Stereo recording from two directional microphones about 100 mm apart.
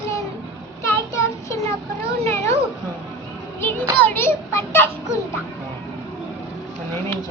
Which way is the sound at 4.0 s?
25° left (ahead or behind).